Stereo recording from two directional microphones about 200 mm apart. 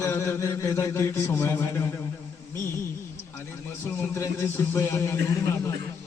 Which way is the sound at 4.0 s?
15° left (ahead or behind).